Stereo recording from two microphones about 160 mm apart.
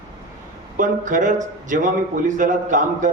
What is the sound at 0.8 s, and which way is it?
A man's voice, 55° right (ahead or behind).